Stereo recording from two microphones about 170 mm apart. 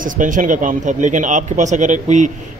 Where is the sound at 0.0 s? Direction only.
50° right (ahead or behind).